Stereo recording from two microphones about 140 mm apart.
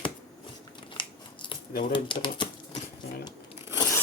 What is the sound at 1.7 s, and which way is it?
Speech, 90° left.